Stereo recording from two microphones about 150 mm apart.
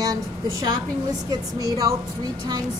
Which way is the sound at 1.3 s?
25° right (ahead or behind).